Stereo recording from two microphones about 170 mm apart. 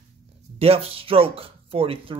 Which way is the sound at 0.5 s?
35° right (ahead or behind).